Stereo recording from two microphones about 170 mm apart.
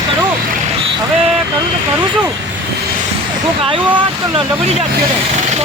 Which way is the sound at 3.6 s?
30° right (ahead or behind).